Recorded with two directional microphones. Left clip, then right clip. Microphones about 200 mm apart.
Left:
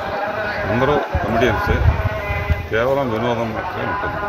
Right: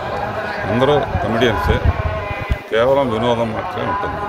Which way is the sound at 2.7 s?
15° right (ahead or behind).